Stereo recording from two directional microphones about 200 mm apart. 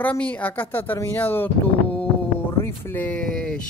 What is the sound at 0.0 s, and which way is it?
Speech, 10° left (ahead or behind).